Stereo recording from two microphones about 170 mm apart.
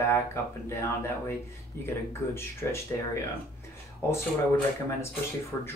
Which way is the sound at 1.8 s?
15° left (ahead or behind).